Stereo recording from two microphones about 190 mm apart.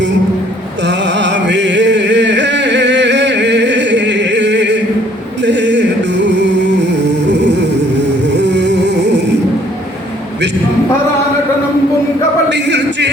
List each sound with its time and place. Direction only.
0.9 s a sound: 65° right (ahead or behind)
5.4 s music: 65° right (ahead or behind)
12.5 s music: 65° right (ahead or behind)